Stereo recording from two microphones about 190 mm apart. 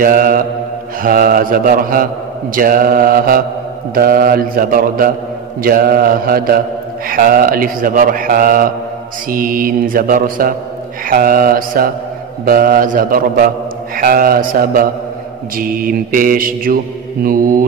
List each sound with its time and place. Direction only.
0.0 s a man's voice: 50° right (ahead or behind)